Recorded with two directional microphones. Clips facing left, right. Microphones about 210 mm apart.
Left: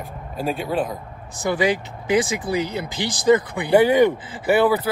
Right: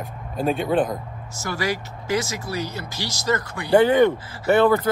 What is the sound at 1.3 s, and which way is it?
Speech, 15° left (ahead or behind).